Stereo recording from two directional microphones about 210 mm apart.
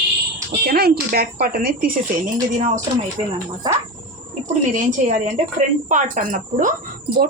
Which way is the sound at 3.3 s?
15° right (ahead or behind).